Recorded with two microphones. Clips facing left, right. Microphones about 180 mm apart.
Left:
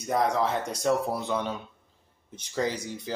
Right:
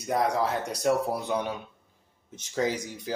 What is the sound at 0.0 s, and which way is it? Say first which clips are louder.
Speech: left 1 dB; centre (ahead or behind).